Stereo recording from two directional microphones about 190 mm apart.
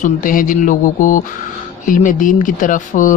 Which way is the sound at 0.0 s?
45° left (ahead or behind).